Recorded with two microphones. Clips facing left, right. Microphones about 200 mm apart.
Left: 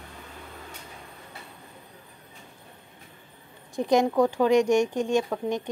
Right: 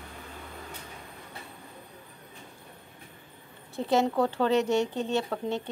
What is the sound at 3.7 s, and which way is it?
Speech, 15° left (ahead or behind).